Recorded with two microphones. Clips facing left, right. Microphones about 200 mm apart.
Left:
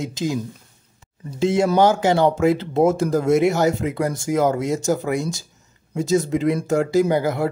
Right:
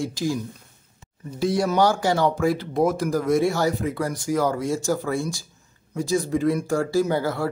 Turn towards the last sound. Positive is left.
turn(degrees=20)  # may be behind; listen again after turning